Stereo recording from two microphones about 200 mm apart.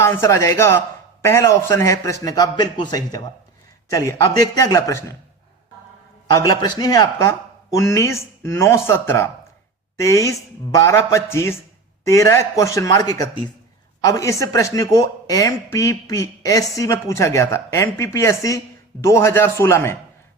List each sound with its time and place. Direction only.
0.0 s speech: 15° left (ahead or behind)
6.4 s speech: 20° left (ahead or behind)